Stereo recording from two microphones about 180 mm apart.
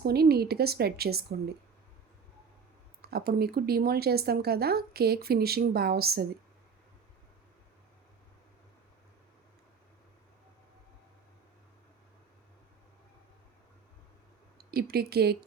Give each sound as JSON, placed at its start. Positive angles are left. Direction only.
{"t": 0.0, "sound": "speech", "side_deg": -60}
{"t": 3.0, "sound": "speech", "side_deg": -60}
{"t": 14.7, "sound": "speech", "side_deg": -60}